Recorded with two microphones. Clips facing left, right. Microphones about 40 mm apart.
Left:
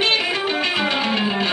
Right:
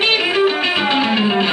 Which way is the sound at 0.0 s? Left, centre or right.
Centre.